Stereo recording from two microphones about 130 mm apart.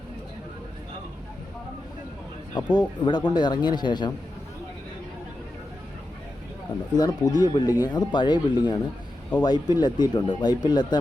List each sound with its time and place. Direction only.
2.7 s speech: 35° left (ahead or behind)
6.9 s speech: 30° left (ahead or behind)